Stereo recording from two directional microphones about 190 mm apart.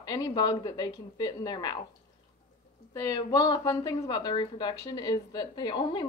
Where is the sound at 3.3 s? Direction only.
20° left (ahead or behind).